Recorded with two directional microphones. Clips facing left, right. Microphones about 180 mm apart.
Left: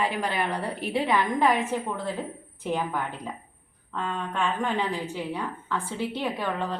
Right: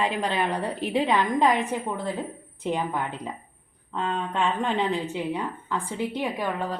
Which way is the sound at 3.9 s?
20° right (ahead or behind).